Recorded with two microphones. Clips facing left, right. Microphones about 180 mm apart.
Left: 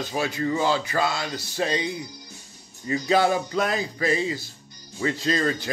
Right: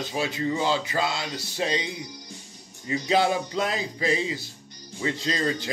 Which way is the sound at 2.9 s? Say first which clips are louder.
Left 2 dB; 20° right (ahead or behind).